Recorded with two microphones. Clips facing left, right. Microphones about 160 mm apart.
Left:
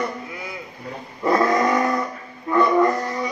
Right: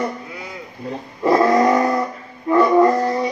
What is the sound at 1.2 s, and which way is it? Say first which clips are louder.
Vehicle: right 4 dB; 30° right (ahead or behind).